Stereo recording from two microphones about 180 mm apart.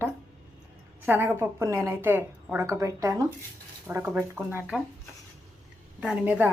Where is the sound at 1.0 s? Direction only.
10° right (ahead or behind).